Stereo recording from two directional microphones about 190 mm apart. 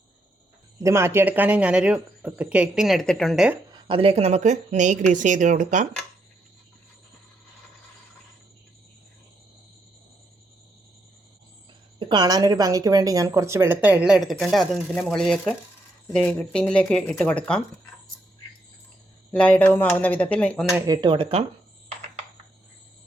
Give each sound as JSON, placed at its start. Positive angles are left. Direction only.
{"t": 0.8, "sound": "a woman's voice", "side_deg": -15}
{"t": 3.8, "sound": "a woman's voice", "side_deg": -25}
{"t": 11.9, "sound": "a woman's voice", "side_deg": -25}
{"t": 19.3, "sound": "speech", "side_deg": 5}
{"t": 20.7, "sound": "speech", "side_deg": -20}